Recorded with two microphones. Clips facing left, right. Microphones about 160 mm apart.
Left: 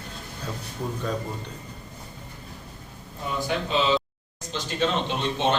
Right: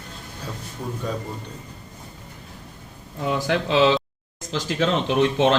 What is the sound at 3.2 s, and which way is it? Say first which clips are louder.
A man's voice: right 5 dB; 90° right.